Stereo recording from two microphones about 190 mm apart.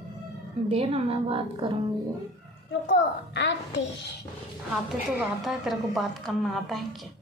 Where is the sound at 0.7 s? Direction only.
30° right (ahead or behind).